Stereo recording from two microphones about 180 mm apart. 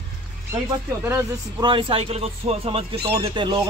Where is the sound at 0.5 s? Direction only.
15° right (ahead or behind).